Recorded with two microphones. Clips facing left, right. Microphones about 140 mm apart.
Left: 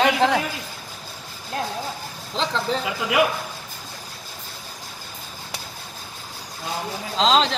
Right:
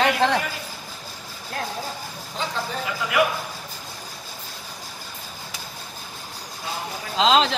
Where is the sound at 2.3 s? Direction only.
80° left.